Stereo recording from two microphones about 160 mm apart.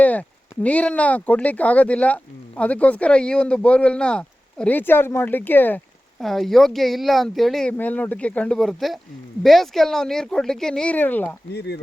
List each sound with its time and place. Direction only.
0.0 s speech: 10° left (ahead or behind)
6.1 s speech: centre (ahead or behind)
11.5 s speech: 90° left